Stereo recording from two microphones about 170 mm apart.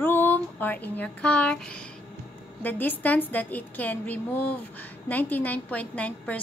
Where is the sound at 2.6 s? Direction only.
10° left (ahead or behind).